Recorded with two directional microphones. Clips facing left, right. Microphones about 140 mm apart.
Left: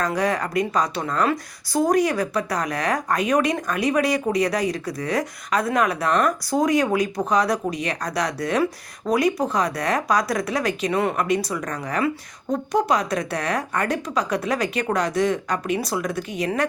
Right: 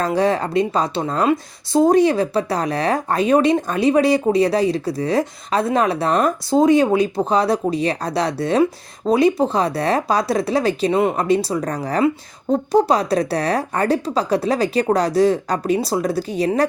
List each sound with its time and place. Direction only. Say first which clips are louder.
0.0 s a woman's voice: right 5 dB; 30° right (ahead or behind)